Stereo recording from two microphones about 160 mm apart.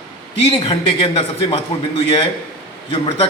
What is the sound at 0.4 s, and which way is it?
A man's voice, 35° left (ahead or behind).